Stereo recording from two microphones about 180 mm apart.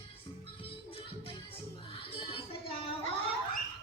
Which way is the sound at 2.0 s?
30° left (ahead or behind).